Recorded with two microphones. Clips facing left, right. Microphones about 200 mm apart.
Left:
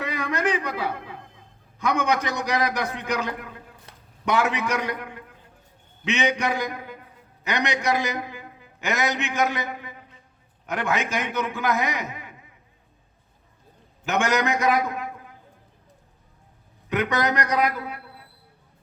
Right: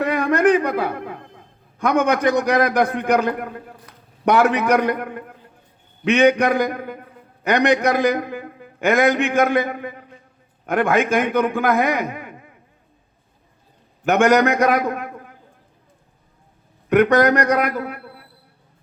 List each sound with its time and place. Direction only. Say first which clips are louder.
0.0 s a man's voice: right 9 dB; 55° right (ahead or behind)
14.0 s a man's voice: right 8 dB; 55° right (ahead or behind)
16.9 s a man's voice: right 10 dB; 55° right (ahead or behind)